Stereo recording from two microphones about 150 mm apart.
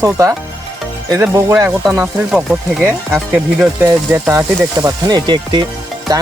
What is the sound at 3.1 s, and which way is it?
Speech, 15° right (ahead or behind).